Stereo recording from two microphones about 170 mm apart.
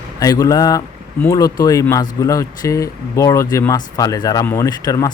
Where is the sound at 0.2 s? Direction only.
20° left (ahead or behind).